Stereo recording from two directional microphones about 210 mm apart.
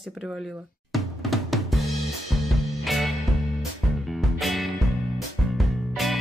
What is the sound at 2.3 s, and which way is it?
Music, centre (ahead or behind).